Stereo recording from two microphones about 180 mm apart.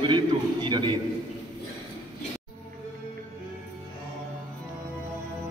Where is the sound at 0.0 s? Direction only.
25° right (ahead or behind).